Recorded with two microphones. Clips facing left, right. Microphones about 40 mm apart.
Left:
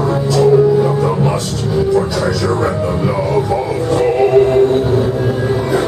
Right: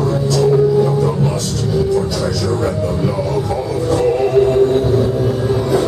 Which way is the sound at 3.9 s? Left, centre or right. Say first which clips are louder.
Left 3 dB; left.